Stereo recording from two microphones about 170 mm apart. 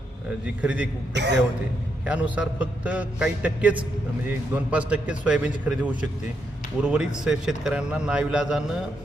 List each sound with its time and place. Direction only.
0.4 s a man's voice: 5° right (ahead or behind)
1.1 s speech: 90° right
2.0 s a man's voice: 10° right (ahead or behind)